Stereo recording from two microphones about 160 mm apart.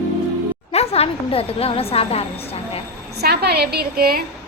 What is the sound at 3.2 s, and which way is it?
Speech, 85° right.